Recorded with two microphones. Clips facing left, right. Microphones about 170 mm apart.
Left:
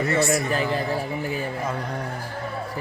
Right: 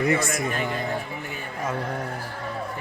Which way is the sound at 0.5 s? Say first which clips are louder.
Left 3 dB; 35° left (ahead or behind).